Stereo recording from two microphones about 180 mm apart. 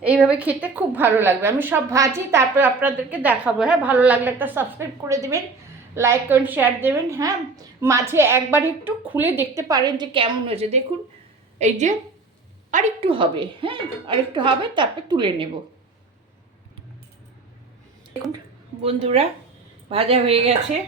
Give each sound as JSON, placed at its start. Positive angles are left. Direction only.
{"t": 0.0, "sound": "a woman's voice", "side_deg": -5}
{"t": 12.7, "sound": "a woman's voice", "side_deg": -30}
{"t": 18.8, "sound": "speech", "side_deg": -35}